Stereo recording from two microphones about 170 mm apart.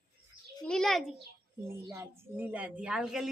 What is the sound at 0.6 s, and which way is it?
Speech, 5° left (ahead or behind).